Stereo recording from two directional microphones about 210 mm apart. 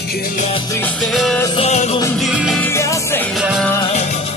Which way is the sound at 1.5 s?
30° left (ahead or behind).